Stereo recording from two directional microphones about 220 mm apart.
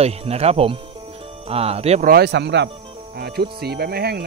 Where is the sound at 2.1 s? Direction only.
50° right (ahead or behind).